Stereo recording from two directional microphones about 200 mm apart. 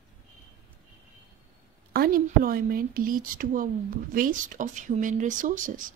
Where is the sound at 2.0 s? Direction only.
45° right (ahead or behind).